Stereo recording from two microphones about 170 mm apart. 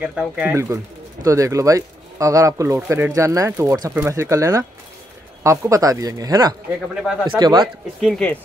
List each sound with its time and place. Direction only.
0.0 s speech: 5° right (ahead or behind); by 7.6 s 25° right (ahead or behind)
7.6 s speech: centre (ahead or behind)